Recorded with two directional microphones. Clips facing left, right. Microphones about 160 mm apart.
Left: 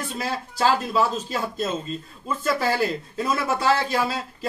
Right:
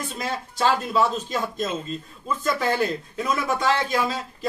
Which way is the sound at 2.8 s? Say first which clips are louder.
Even; 30° left (ahead or behind).